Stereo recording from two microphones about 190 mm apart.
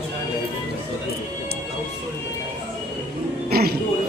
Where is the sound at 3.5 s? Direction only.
55° right (ahead or behind).